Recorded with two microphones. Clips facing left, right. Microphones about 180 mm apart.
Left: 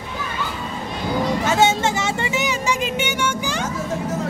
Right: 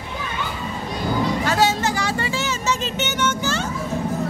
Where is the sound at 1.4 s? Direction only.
25° left (ahead or behind).